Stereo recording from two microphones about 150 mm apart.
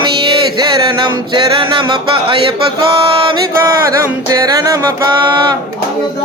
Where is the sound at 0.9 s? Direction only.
30° right (ahead or behind).